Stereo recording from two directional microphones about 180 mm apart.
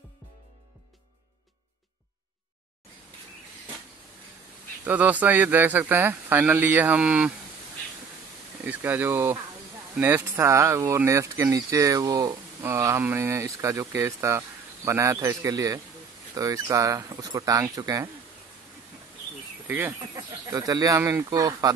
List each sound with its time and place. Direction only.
4.8 s speech: 10° right (ahead or behind)
8.6 s speech: 10° right (ahead or behind)
20.0 s speech: 20° right (ahead or behind)